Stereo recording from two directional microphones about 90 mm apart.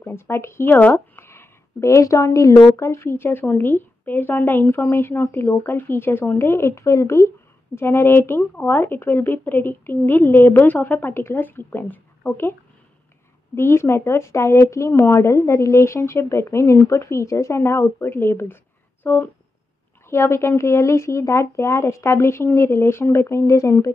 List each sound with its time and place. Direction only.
0.0 s speech: 30° left (ahead or behind)
13.6 s speech: 25° left (ahead or behind)